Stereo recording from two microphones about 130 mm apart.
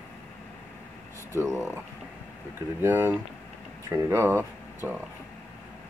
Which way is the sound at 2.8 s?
15° right (ahead or behind).